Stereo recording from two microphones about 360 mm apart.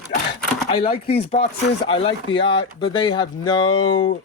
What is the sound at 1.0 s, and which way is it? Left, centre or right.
Speech, left.